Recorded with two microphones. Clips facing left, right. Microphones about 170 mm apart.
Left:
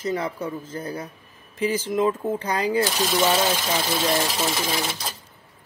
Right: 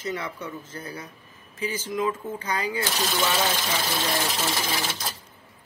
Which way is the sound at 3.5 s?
10° left (ahead or behind).